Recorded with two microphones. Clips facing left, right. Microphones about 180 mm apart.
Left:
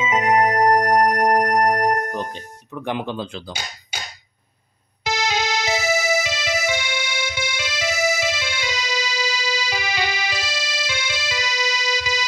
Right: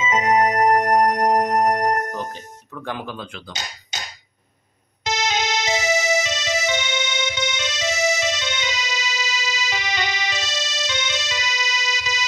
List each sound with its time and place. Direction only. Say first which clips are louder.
0.0 s music: even; 10° left (ahead or behind); by 3.5 s 35° left (ahead or behind)
5.0 s music: even; 25° right (ahead or behind)
5.7 s music: even; 10° left (ahead or behind)